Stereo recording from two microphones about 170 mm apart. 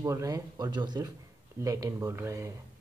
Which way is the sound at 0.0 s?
20° right (ahead or behind).